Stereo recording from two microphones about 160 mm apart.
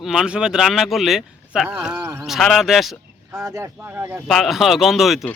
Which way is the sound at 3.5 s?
15° right (ahead or behind).